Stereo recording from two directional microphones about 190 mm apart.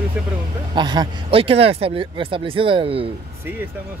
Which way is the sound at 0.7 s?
25° right (ahead or behind).